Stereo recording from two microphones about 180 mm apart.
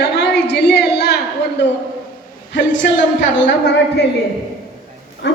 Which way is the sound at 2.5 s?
85° left.